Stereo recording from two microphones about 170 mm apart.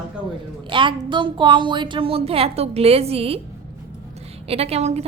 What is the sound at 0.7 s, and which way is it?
A woman's voice, 30° right (ahead or behind).